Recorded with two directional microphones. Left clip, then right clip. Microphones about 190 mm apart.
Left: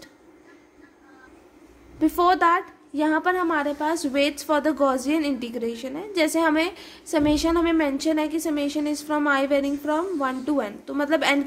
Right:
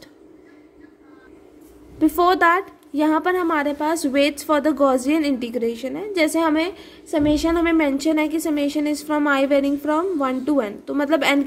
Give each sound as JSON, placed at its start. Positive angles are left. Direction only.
{"t": 2.0, "sound": "a woman's voice", "side_deg": -25}